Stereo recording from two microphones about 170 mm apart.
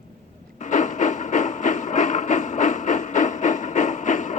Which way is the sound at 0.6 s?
45° left (ahead or behind).